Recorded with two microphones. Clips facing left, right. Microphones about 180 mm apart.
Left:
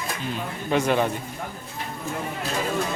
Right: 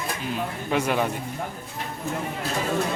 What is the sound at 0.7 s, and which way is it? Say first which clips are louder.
Speech: left 2 dB; 10° right (ahead or behind).